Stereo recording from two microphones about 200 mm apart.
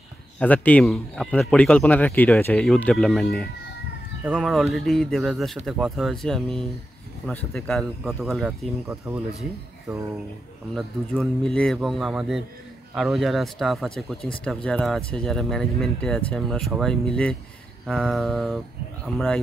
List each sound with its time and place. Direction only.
0.4 s speech: 5° left (ahead or behind)
8.8 s speech: 15° right (ahead or behind)
10.7 s speech: centre (ahead or behind)